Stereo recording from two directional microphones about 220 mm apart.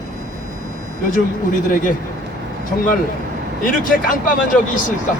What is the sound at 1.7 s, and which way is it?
Speech, 35° left (ahead or behind).